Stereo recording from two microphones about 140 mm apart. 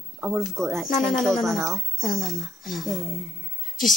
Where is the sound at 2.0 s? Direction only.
90° left.